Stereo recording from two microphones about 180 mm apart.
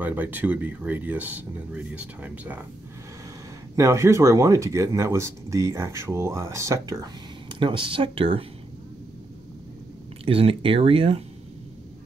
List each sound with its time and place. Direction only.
0.0 s speech: 10° right (ahead or behind)
3.7 s speech: 15° right (ahead or behind)
10.2 s speech: 30° right (ahead or behind)